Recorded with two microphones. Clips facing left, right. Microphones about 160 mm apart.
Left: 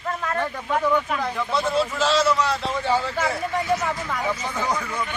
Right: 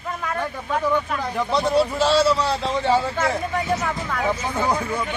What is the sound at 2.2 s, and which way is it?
Speech, 30° right (ahead or behind).